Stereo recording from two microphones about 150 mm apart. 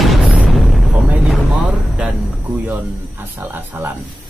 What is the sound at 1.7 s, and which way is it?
Speech, 10° right (ahead or behind).